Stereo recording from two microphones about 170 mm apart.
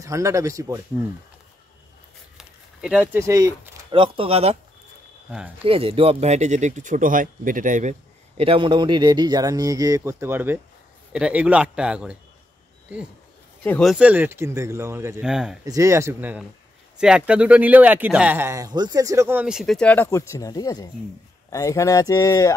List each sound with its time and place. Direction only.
0.0 s a man's voice: 20° right (ahead or behind)
2.3 s a sound: 5° right (ahead or behind)
3.9 s speech: 30° right (ahead or behind)
5.7 s speech: 35° right (ahead or behind); by 7.9 s 50° right (ahead or behind)
8.4 s a man's voice: 30° right (ahead or behind); by 12.2 s 5° right (ahead or behind)
13.7 s a man's voice: 5° left (ahead or behind)
13.9 s a man's voice: 10° right (ahead or behind)
15.2 s a man's voice: 5° right (ahead or behind)
15.6 s a man's voice: 20° right (ahead or behind); by 22.6 s 20° left (ahead or behind)